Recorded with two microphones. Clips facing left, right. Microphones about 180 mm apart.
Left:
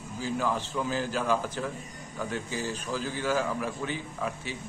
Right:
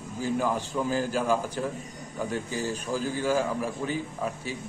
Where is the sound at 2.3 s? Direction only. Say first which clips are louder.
Right 2 dB; 40° right (ahead or behind).